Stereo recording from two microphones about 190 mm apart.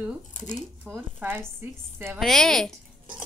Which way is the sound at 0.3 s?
40° left (ahead or behind).